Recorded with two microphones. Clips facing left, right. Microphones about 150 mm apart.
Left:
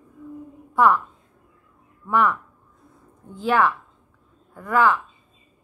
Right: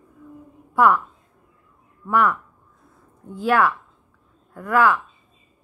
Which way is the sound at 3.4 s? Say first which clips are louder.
Right 1 dB; 10° right (ahead or behind).